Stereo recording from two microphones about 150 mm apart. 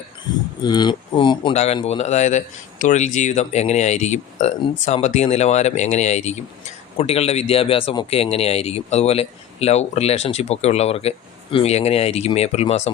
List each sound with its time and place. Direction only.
0.6 s speech: 30° left (ahead or behind)
1.5 s speech: 45° left (ahead or behind)